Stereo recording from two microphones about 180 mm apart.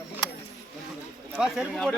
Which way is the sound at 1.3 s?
5° right (ahead or behind).